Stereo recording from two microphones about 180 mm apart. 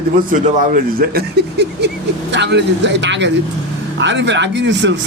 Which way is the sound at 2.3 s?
75° right (ahead or behind).